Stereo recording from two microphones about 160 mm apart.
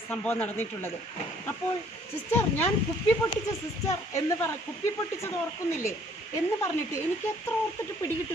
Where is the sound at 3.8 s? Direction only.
20° left (ahead or behind).